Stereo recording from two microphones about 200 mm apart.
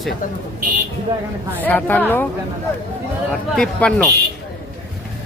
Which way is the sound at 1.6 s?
10° left (ahead or behind).